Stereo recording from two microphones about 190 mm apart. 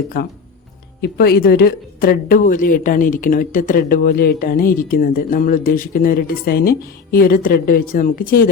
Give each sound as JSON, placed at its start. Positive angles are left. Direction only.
{"t": 0.1, "sound": "speech", "side_deg": 55}